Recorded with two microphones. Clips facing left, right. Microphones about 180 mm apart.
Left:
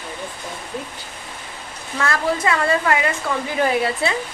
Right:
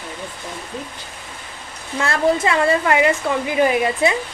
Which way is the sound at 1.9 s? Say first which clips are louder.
Right 3 dB; 25° right (ahead or behind).